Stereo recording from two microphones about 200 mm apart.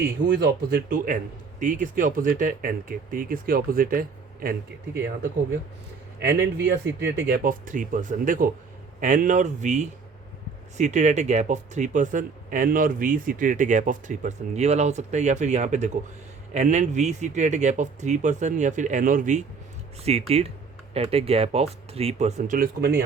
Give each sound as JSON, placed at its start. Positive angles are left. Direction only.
{"t": 0.3, "sound": "a man's voice", "side_deg": -60}
{"t": 6.1, "sound": "a man's voice", "side_deg": -55}